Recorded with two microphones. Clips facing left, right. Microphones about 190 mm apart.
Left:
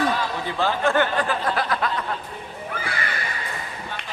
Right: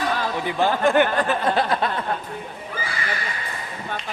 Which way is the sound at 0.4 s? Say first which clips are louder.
Right 3 dB; 15° right (ahead or behind).